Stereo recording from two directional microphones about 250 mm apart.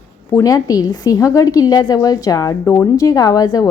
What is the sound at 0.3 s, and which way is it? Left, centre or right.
A woman's voice, centre.